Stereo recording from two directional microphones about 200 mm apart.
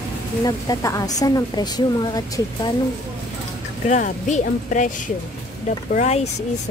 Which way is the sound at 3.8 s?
35° left (ahead or behind).